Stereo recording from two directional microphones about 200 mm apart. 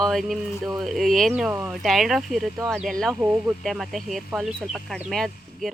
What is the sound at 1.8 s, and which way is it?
Speech, centre (ahead or behind).